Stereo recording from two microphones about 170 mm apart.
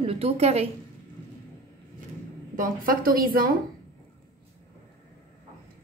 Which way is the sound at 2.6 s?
55° right (ahead or behind).